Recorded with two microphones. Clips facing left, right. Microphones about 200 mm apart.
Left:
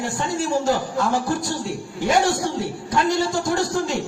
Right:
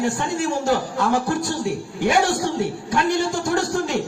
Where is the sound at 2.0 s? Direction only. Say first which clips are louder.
Even; 60° right (ahead or behind).